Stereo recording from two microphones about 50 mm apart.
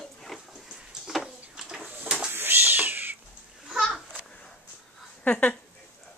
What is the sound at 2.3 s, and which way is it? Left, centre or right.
Cat, right.